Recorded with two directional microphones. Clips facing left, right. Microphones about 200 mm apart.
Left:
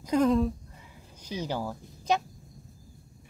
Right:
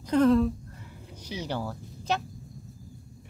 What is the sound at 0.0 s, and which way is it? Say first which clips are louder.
Speech: right 2 dB; 10° left (ahead or behind).